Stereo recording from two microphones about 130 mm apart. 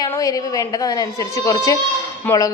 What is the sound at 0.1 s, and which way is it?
A woman's voice, 30° left (ahead or behind).